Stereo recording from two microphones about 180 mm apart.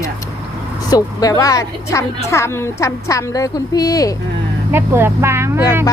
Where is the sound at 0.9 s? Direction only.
20° left (ahead or behind).